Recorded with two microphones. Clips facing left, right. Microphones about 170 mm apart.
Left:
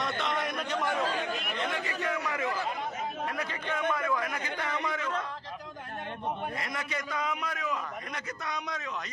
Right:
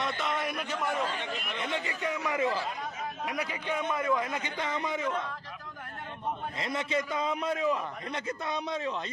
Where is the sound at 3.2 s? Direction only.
10° right (ahead or behind).